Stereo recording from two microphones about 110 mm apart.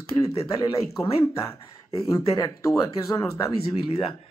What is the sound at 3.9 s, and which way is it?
Speech, 60° left (ahead or behind).